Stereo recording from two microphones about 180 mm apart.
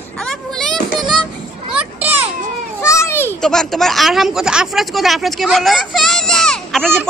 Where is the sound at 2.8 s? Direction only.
15° left (ahead or behind).